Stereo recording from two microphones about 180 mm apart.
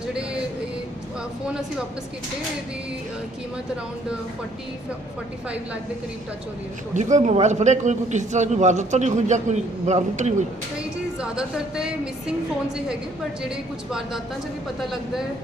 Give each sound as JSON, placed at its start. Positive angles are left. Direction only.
{"t": 0.1, "sound": "vehicle", "side_deg": -5}
{"t": 6.9, "sound": "a man's voice", "side_deg": -40}
{"t": 11.2, "sound": "a woman's voice", "side_deg": -5}